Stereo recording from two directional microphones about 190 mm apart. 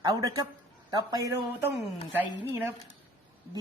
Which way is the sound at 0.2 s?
15° right (ahead or behind).